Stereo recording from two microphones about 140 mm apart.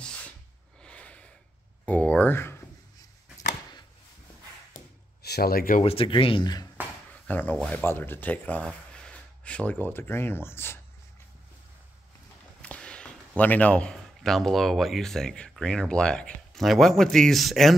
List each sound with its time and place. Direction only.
0.8 s snort: 10° left (ahead or behind)
1.9 s speech: 10° left (ahead or behind)
3.0 s a sound: 25° left (ahead or behind)
5.4 s speech: 90° left
5.8 s speech: 40° left (ahead or behind)
7.2 s speech: 10° left (ahead or behind)
12.6 s a sound: 10° left (ahead or behind)
13.4 s speech: 10° left (ahead or behind)